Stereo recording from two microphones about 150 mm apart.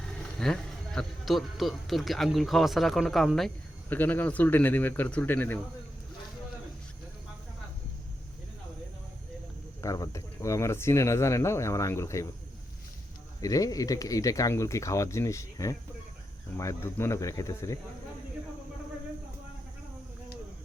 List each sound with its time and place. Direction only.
0.0 s speech: 5° left (ahead or behind)
3.8 s speech: 10° left (ahead or behind)
9.8 s speech: 20° left (ahead or behind)
13.4 s speech: 25° left (ahead or behind)